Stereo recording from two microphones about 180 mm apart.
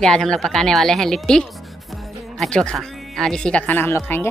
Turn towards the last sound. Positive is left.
turn(degrees=15)  # may be behind; listen again after turning